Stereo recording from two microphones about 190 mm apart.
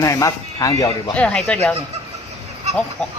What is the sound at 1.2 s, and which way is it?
Speech, 5° left (ahead or behind).